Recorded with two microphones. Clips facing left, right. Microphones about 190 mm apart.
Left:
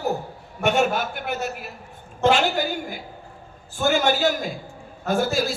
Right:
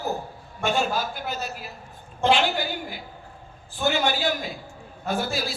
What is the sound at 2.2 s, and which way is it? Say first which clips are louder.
A man's voice: left 2 dB; 45° left (ahead or behind).